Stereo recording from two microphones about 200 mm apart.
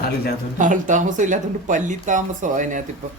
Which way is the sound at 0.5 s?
40° right (ahead or behind).